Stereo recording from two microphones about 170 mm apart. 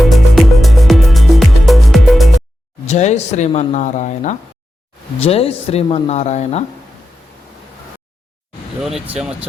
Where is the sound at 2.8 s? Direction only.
40° left (ahead or behind).